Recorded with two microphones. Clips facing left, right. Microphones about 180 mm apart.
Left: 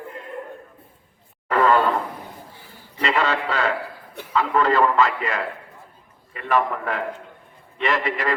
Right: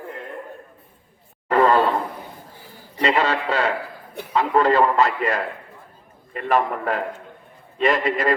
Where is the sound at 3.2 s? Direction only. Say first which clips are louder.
Right 1 dB; 35° right (ahead or behind).